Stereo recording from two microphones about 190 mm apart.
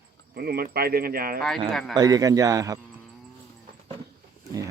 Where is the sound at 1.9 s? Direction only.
20° right (ahead or behind).